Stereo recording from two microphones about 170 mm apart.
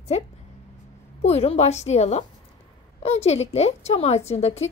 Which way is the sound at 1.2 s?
40° left (ahead or behind).